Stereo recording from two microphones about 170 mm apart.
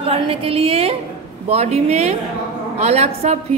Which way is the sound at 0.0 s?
35° right (ahead or behind).